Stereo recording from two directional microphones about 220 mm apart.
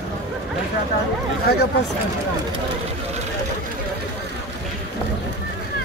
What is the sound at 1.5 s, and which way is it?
Speech, 45° left (ahead or behind).